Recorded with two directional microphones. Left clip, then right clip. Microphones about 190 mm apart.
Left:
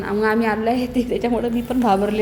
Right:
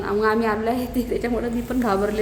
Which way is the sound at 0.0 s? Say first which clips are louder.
Left 1 dB; 10° left (ahead or behind).